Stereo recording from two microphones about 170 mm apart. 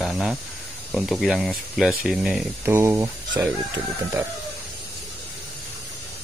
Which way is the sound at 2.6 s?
15° right (ahead or behind).